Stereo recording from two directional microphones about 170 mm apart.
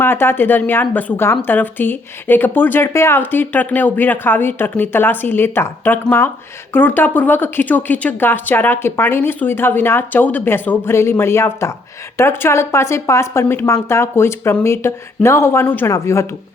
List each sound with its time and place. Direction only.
0.0 s speech: 15° left (ahead or behind)